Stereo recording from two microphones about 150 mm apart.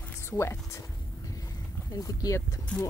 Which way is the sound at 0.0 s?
15° left (ahead or behind).